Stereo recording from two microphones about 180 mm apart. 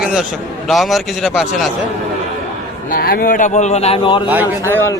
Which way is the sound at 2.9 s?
55° left (ahead or behind).